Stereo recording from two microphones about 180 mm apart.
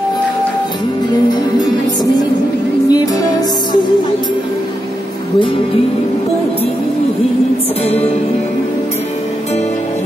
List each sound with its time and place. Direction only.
2.9 s music: 20° left (ahead or behind)